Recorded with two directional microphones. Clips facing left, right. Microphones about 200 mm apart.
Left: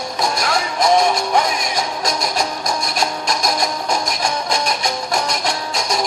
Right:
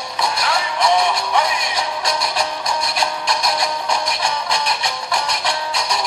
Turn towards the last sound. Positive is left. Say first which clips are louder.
# left 1 dB
turn(degrees=45)  # may be behind; listen again after turning